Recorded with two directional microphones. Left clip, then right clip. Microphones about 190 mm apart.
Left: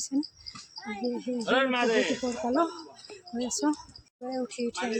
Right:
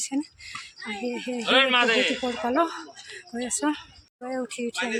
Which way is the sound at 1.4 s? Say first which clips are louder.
Right 6 dB; 30° left (ahead or behind).